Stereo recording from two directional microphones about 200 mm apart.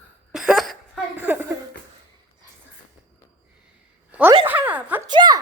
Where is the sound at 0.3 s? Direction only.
Centre (ahead or behind).